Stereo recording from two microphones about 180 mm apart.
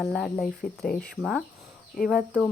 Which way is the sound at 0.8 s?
55° left (ahead or behind).